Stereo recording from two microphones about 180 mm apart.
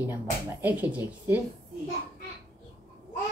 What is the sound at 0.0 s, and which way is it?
Speech, 10° right (ahead or behind).